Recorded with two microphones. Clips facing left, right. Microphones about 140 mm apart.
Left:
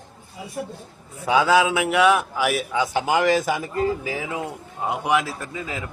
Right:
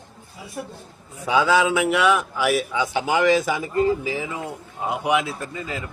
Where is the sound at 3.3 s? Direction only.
45° left (ahead or behind).